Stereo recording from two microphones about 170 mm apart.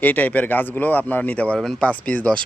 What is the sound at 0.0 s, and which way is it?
Speech, 10° left (ahead or behind).